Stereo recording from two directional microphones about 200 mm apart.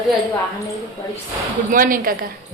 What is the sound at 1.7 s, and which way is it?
Speech, 45° right (ahead or behind).